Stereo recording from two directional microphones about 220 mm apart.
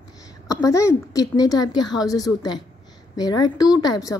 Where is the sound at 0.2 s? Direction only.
15° left (ahead or behind).